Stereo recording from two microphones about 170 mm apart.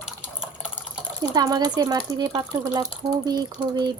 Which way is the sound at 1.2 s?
20° right (ahead or behind).